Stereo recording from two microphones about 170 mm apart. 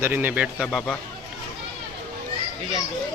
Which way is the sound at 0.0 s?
10° right (ahead or behind).